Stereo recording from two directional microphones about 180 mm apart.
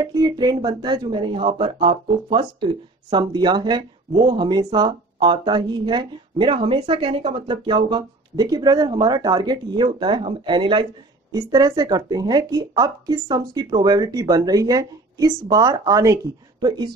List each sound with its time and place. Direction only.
0.0 s speech: 20° right (ahead or behind)